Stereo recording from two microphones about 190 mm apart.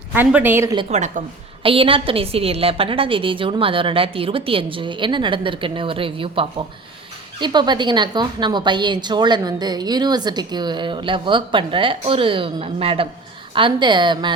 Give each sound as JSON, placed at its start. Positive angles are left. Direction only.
{"t": 0.1, "sound": "speech", "side_deg": -10}
{"t": 0.9, "sound": "a woman's voice", "side_deg": -35}